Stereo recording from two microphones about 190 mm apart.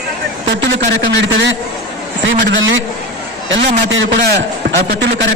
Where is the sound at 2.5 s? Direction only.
80° right.